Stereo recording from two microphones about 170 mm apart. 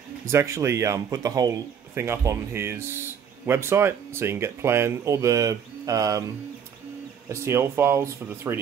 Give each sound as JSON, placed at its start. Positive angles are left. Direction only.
{"t": 0.2, "sound": "speech", "side_deg": -15}
{"t": 7.2, "sound": "speech", "side_deg": -15}